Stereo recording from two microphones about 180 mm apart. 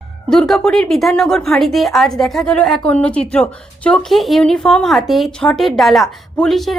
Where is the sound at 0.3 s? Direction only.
Centre (ahead or behind).